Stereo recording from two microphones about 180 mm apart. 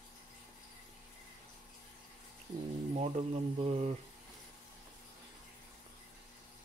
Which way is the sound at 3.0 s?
35° right (ahead or behind).